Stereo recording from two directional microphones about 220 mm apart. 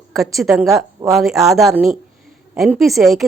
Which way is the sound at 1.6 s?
Centre (ahead or behind).